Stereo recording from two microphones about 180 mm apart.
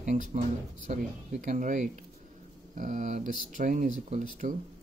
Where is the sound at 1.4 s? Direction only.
45° right (ahead or behind).